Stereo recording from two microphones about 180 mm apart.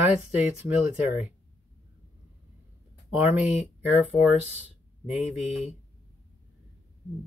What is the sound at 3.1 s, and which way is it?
Speech, 10° right (ahead or behind).